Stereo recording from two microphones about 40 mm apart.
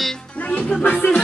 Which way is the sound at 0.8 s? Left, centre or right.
Left.